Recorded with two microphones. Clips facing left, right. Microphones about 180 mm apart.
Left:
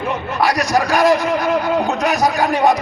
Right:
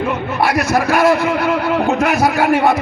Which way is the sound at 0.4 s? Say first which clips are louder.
Right 1 dB; 15° left (ahead or behind).